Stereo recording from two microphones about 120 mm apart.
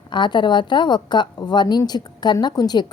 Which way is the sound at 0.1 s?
40° left (ahead or behind).